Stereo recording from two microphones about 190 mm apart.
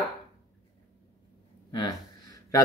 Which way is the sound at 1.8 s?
20° left (ahead or behind).